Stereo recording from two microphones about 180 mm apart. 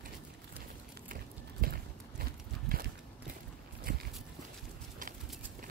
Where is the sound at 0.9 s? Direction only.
55° right (ahead or behind).